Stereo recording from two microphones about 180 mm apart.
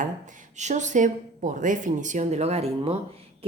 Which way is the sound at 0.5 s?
40° right (ahead or behind).